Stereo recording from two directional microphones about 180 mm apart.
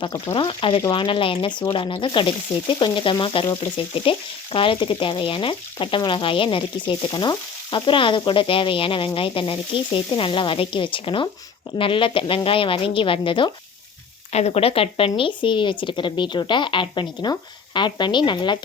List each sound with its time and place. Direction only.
0.0 s frying: 25° left (ahead or behind)